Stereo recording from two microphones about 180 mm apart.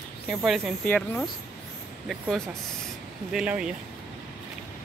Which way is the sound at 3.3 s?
5° right (ahead or behind).